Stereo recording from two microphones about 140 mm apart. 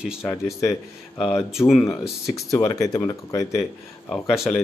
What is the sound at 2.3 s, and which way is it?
Speech, 25° left (ahead or behind).